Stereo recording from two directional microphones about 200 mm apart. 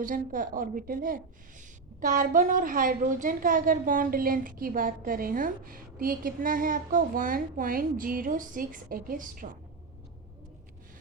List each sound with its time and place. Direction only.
0.0 s a woman's voice: 40° right (ahead or behind)